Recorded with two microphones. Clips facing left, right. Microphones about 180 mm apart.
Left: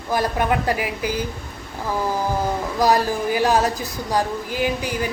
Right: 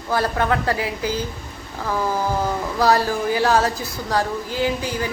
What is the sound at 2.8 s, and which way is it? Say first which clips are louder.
A woman's voice: even; 15° left (ahead or behind).